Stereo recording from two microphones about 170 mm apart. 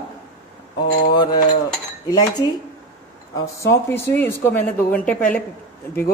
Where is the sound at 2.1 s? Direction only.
20° left (ahead or behind).